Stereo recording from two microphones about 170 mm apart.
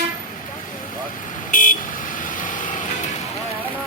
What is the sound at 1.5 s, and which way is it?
Vehicle, 50° left (ahead or behind).